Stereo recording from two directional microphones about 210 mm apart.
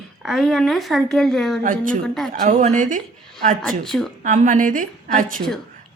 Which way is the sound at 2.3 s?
35° right (ahead or behind).